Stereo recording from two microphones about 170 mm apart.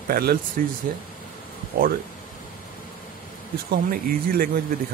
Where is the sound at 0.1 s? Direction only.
65° right (ahead or behind).